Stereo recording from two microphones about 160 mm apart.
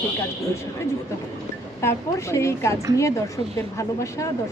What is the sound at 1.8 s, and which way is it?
Speech, 15° left (ahead or behind).